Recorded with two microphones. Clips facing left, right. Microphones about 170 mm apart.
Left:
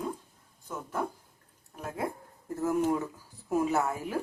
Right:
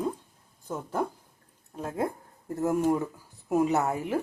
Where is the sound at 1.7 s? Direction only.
25° right (ahead or behind).